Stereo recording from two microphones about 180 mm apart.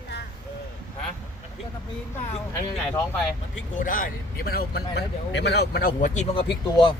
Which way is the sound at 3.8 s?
50° left (ahead or behind).